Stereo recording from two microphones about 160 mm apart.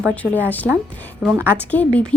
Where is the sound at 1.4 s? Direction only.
10° left (ahead or behind).